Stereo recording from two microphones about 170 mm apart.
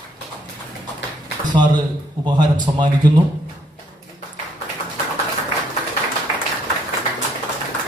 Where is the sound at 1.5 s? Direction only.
25° right (ahead or behind).